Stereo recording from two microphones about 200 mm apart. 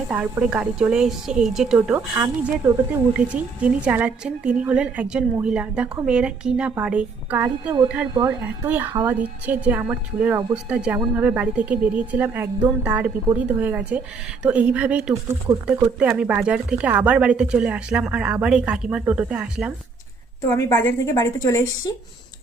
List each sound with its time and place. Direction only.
0.1 s a woman's voice: 5° right (ahead or behind)
8.6 s a woman's voice: 10° right (ahead or behind)
20.5 s a woman's voice: 15° left (ahead or behind)